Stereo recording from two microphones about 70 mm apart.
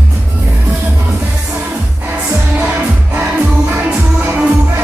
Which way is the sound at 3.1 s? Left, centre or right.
Right.